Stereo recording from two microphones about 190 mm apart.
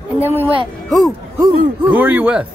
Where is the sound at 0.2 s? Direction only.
10° right (ahead or behind).